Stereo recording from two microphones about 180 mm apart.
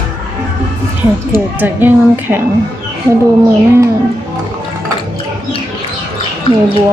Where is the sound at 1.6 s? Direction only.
10° right (ahead or behind).